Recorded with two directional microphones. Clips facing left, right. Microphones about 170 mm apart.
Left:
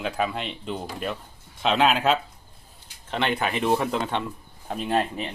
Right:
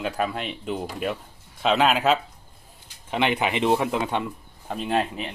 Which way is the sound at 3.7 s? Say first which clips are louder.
Right 1 dB; 5° right (ahead or behind).